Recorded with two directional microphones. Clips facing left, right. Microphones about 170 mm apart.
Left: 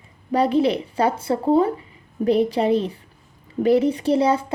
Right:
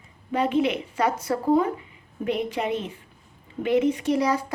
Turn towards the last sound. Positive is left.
turn(degrees=25)  # may be behind; listen again after turning